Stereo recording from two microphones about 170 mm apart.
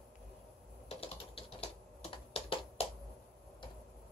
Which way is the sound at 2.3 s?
35° left (ahead or behind).